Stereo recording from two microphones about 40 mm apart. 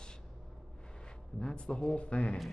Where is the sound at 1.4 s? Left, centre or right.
Left.